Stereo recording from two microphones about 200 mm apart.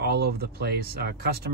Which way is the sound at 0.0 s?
55° right (ahead or behind).